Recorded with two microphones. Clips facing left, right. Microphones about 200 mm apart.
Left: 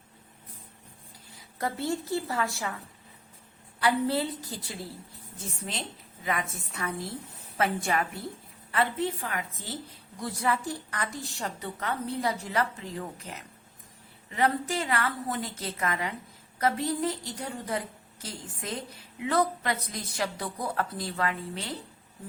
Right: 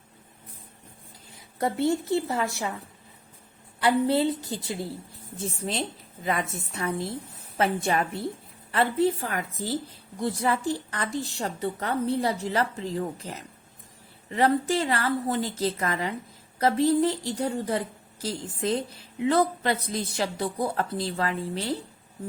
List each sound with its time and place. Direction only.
1.5 s a woman's voice: 25° right (ahead or behind)
3.8 s a woman's voice: 25° right (ahead or behind)
6.2 s a woman's voice: 30° right (ahead or behind)